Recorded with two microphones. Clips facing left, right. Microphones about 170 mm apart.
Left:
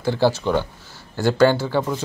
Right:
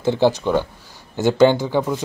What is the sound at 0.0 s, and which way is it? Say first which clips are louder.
Speech: right 2 dB; 20° right (ahead or behind).